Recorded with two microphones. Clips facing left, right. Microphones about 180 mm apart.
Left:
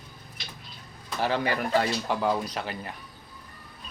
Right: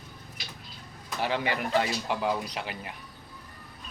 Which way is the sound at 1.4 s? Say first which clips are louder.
Left 1 dB; 40° left (ahead or behind).